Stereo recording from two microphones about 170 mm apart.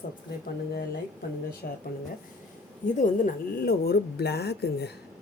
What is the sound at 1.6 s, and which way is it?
Speech, 50° left (ahead or behind).